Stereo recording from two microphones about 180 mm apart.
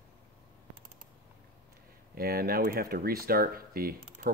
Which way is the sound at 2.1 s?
55° right (ahead or behind).